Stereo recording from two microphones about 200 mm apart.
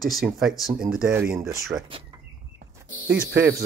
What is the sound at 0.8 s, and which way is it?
Speech, 5° right (ahead or behind).